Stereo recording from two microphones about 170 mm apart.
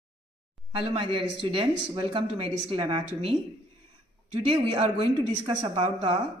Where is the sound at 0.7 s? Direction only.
30° right (ahead or behind).